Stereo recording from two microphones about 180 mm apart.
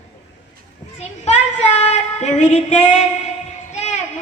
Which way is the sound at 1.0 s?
40° left (ahead or behind).